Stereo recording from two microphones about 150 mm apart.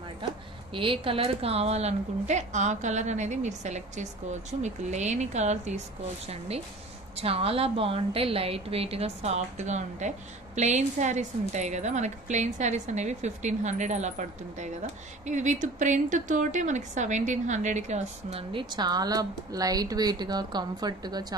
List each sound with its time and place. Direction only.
0.7 s a woman's voice: 35° right (ahead or behind)
18.5 s a woman's voice: 30° right (ahead or behind)